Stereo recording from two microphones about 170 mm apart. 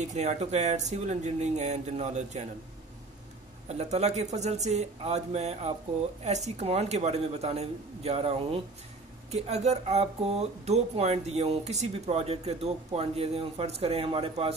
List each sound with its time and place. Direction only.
0.0 s speech: 40° right (ahead or behind)
3.6 s speech: 40° right (ahead or behind)